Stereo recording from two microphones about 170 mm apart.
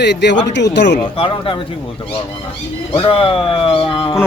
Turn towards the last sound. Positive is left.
turn(degrees=30)  # may be behind; listen again after turning